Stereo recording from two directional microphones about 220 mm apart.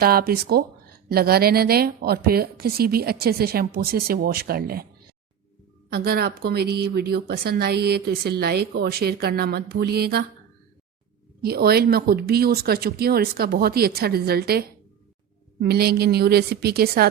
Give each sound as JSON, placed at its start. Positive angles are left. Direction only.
{"t": 0.0, "sound": "a woman's voice", "side_deg": -45}
{"t": 11.4, "sound": "a woman's voice", "side_deg": -45}